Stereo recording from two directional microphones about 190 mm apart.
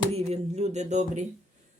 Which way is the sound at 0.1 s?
35° right (ahead or behind).